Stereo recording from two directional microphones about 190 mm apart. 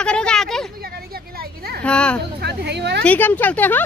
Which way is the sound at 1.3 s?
55° right (ahead or behind).